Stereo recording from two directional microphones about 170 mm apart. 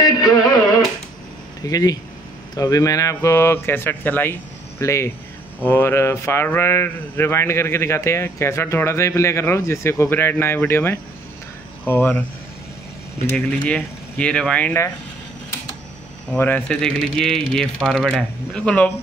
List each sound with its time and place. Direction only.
0.3 s music: 20° left (ahead or behind)
1.7 s speech: 20° left (ahead or behind)
13.5 s speech: 10° left (ahead or behind)
16.3 s speech: 10° left (ahead or behind)